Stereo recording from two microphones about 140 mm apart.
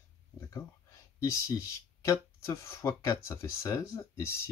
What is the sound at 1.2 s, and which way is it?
Speech, 20° left (ahead or behind).